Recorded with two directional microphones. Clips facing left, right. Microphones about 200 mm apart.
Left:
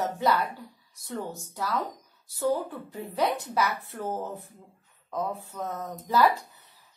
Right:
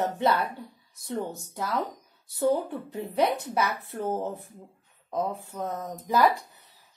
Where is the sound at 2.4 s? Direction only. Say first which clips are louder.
Right 2 dB; 20° right (ahead or behind).